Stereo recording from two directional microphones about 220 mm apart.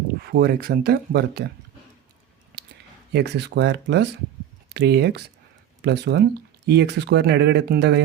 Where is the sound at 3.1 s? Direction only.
50° right (ahead or behind).